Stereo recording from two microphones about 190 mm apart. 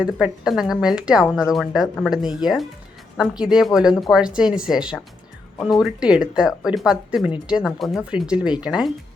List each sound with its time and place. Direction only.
0.0 s speech: 5° right (ahead or behind)